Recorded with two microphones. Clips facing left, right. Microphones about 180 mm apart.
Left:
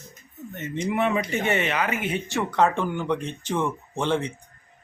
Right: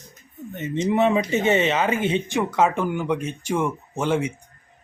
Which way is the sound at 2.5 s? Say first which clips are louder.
Even; 5° right (ahead or behind).